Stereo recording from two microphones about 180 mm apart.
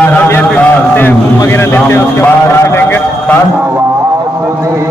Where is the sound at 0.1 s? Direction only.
10° left (ahead or behind).